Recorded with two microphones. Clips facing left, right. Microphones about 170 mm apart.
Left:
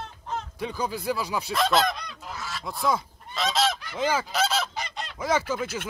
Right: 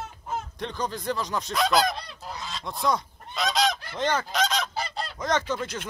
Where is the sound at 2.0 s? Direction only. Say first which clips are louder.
Right 1 dB; 30° right (ahead or behind).